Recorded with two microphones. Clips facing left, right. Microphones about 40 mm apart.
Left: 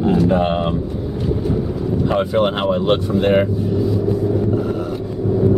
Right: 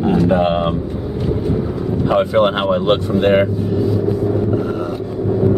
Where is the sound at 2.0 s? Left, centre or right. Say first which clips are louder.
Right 4 dB; centre.